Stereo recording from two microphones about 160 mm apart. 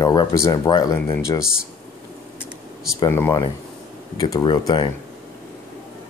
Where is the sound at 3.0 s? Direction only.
15° left (ahead or behind).